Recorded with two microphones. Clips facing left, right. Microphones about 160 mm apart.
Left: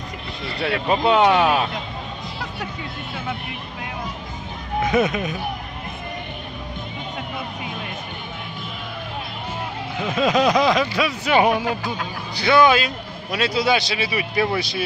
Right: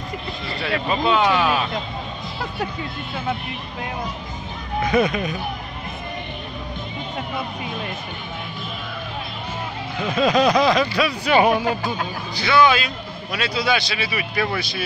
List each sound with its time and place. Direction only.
0.6 s speech: 65° left (ahead or behind)
4.8 s speech: 20° left (ahead or behind)
9.9 s speech: 15° left (ahead or behind)
12.4 s a man's voice: 50° left (ahead or behind)
13.9 s speech: 20° left (ahead or behind)